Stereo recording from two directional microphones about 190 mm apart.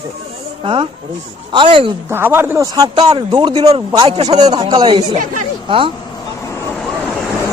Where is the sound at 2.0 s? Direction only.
10° right (ahead or behind).